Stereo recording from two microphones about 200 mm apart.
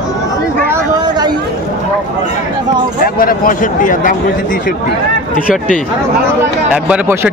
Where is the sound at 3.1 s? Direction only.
45° left (ahead or behind).